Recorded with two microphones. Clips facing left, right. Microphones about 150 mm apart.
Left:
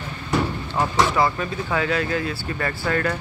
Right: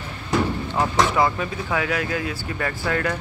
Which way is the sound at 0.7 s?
10° right (ahead or behind).